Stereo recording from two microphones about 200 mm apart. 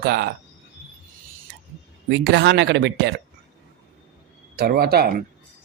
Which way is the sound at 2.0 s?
60° right (ahead or behind).